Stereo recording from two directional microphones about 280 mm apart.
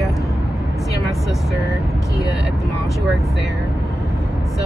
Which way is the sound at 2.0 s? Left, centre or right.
Centre.